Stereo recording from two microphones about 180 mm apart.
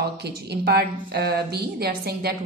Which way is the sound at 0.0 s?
65° right (ahead or behind).